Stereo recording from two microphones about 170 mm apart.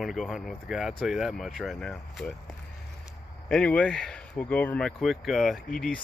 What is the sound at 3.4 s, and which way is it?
Speech, 5° left (ahead or behind).